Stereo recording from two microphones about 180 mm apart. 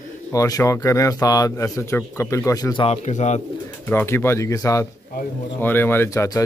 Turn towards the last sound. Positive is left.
turn(degrees=15)  # may be behind; listen again after turning